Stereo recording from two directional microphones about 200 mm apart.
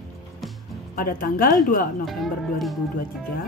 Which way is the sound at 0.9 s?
45° left (ahead or behind).